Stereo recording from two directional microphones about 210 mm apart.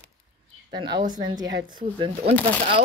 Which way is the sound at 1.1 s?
20° right (ahead or behind).